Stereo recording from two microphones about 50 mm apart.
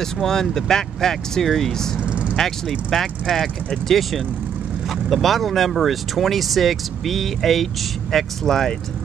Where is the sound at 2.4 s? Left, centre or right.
Centre.